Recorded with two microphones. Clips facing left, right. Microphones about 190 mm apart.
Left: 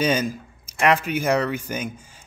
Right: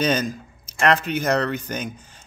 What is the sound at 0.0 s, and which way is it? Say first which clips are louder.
Speech: even; 10° left (ahead or behind).